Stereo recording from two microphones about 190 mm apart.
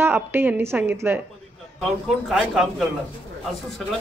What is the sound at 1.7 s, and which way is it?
Speech, centre (ahead or behind).